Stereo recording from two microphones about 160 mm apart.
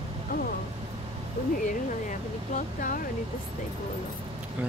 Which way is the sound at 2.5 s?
55° left (ahead or behind).